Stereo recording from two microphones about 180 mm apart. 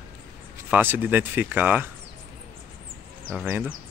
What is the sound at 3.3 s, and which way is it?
Speech, 5° right (ahead or behind).